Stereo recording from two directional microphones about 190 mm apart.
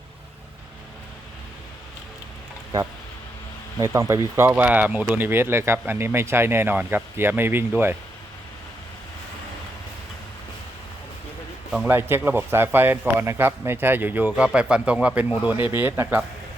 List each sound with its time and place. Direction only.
3.8 s speech: 15° right (ahead or behind)
11.9 s speech: 10° right (ahead or behind)